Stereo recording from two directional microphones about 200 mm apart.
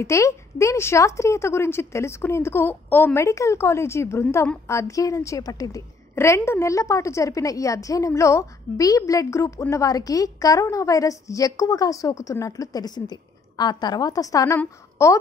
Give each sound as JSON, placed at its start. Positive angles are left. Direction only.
{"t": 0.0, "sound": "a woman's voice", "side_deg": 15}